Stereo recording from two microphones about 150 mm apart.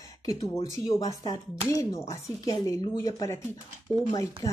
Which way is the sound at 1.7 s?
20° left (ahead or behind).